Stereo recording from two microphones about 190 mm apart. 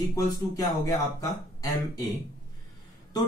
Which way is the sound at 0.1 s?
20° left (ahead or behind).